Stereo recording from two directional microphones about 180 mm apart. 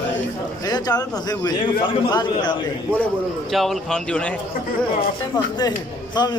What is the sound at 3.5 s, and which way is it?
Speech, centre (ahead or behind).